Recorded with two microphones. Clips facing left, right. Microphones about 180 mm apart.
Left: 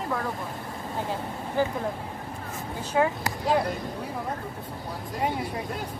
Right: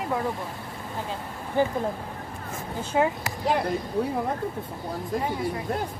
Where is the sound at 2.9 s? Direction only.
25° right (ahead or behind).